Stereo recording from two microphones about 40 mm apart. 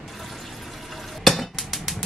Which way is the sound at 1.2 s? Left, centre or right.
Centre.